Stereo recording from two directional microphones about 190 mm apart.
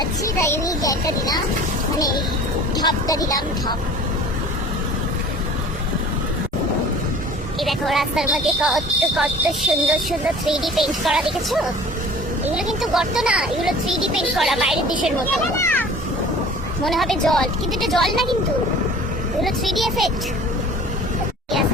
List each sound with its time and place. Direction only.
0.0 s a sound: 15° left (ahead or behind)
2.0 s speech: 20° left (ahead or behind)
7.6 s speech: centre (ahead or behind)
15.5 s vehicle: 10° left (ahead or behind)
16.8 s speech: centre (ahead or behind)
19.4 s speech: centre (ahead or behind)